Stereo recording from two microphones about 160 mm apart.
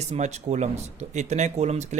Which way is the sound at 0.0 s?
45° right (ahead or behind).